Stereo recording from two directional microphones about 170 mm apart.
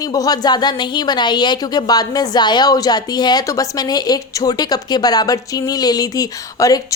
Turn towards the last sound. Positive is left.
turn(degrees=20)  # may be behind; listen again after turning